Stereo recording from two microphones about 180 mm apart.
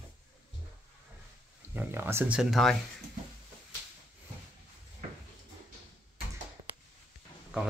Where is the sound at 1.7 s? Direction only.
10° right (ahead or behind).